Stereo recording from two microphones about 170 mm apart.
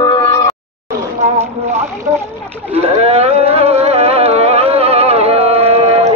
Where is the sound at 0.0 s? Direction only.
20° left (ahead or behind).